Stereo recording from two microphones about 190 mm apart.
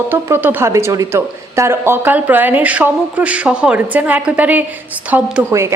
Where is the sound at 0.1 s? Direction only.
10° right (ahead or behind).